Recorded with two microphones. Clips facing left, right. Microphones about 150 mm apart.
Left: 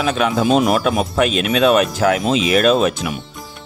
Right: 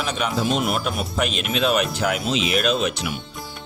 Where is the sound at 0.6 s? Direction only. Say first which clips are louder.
Left 8 dB; 90° left.